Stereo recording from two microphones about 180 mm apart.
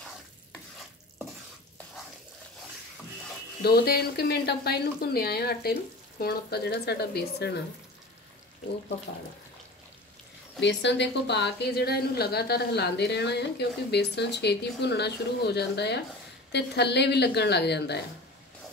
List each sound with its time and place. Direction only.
3.6 s speech: 60° left (ahead or behind)
10.6 s speech: 75° left (ahead or behind)